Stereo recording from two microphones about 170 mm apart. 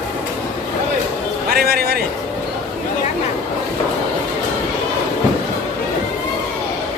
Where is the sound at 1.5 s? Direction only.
65° right (ahead or behind).